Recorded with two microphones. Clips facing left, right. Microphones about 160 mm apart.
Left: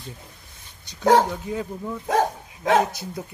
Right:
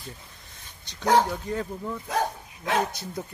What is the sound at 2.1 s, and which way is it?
Speech, 90° left.